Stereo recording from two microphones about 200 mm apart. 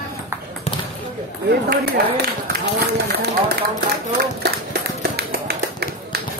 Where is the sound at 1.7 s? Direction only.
55° right (ahead or behind).